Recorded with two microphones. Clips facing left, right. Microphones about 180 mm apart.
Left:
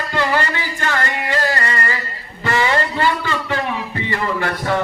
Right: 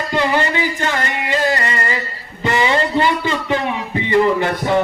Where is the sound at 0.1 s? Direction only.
20° right (ahead or behind).